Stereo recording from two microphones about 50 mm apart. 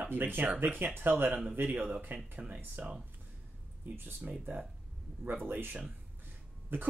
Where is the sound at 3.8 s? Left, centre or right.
Right.